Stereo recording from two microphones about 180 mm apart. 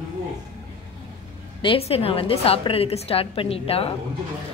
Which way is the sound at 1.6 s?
30° left (ahead or behind).